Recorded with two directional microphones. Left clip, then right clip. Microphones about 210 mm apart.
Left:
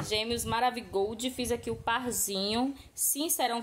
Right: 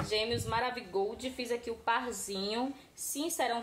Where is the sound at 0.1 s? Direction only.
45° left (ahead or behind).